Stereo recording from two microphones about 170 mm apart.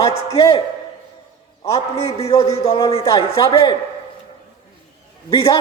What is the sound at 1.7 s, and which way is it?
A man's voice, 35° left (ahead or behind).